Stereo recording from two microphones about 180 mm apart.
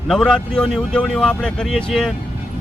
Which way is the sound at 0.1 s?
5° left (ahead or behind).